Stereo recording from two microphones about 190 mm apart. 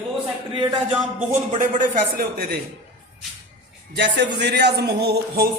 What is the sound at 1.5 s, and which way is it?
Speech, 40° right (ahead or behind).